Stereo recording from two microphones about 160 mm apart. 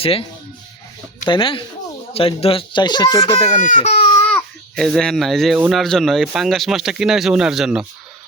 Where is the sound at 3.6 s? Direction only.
50° left (ahead or behind).